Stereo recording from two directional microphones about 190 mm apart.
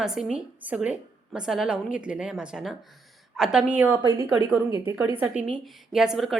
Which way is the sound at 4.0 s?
20° right (ahead or behind).